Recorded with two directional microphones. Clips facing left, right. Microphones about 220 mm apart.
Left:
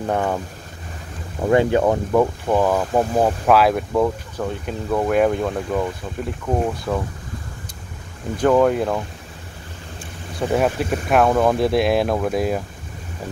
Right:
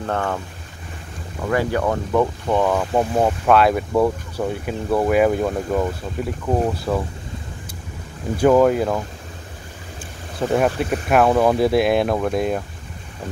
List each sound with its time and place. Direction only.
0.0 s speech: 15° left (ahead or behind)
1.5 s speech: 20° left (ahead or behind)
2.1 s speech: 5° left (ahead or behind)
8.4 s speech: 5° right (ahead or behind)
10.4 s speech: centre (ahead or behind)